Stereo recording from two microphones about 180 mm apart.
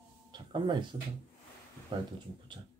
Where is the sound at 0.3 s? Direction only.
25° right (ahead or behind).